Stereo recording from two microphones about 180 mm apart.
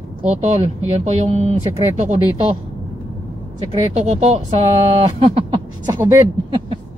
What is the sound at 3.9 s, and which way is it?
Speech, 40° right (ahead or behind).